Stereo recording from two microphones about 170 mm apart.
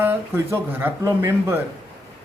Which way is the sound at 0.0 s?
15° right (ahead or behind).